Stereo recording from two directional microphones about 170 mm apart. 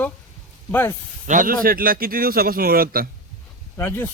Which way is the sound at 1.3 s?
55° right (ahead or behind).